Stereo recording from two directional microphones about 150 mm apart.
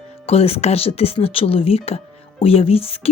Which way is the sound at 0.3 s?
40° left (ahead or behind).